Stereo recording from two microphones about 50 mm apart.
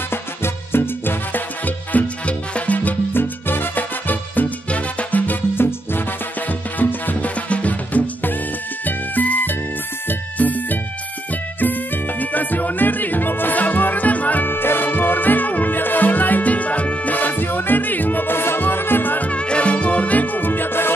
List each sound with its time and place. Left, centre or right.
0.1 s music: left
1.9 s music: left
3.1 s music: left
6.8 s music: left
12.2 s music: left
14.5 s music: left